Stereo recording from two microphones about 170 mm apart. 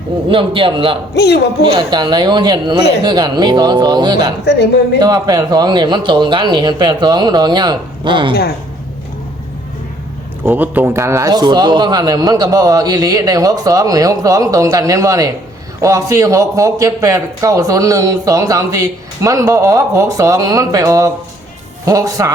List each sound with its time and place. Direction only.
0.3 s a man's voice: 30° right (ahead or behind)
1.1 s a man's voice: 75° left (ahead or behind)
1.9 s a man's voice: 25° right (ahead or behind)
10.4 s a man's voice: 10° right (ahead or behind)